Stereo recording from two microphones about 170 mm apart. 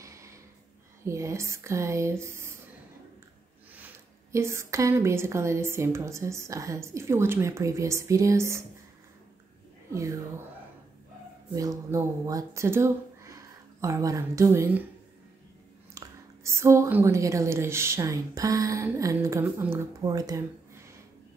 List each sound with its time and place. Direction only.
0.0 s a sound: 15° right (ahead or behind)
1.0 s speech: 15° right (ahead or behind)
3.7 s speech: 10° right (ahead or behind)
11.5 s speech: 20° right (ahead or behind)
15.9 s speech: 15° right (ahead or behind)